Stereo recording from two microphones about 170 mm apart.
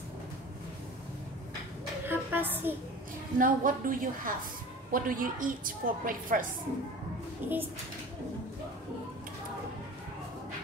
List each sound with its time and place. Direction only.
2.0 s a sound: 10° right (ahead or behind)
3.3 s a woman's voice: 50° right (ahead or behind)
7.4 s speech: 10° right (ahead or behind)